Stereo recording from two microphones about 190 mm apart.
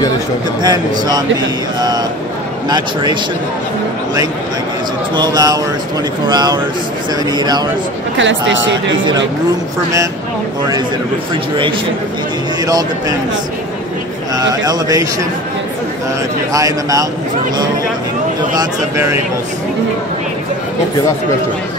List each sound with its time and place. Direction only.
0.6 s a man's voice: 20° right (ahead or behind)
5.1 s a man's voice: 20° right (ahead or behind)
8.2 s speech: 75° right (ahead or behind)
14.3 s a man's voice: 20° right (ahead or behind)
16.5 s a man's voice: 20° right (ahead or behind)
18.5 s a man's voice: 20° right (ahead or behind)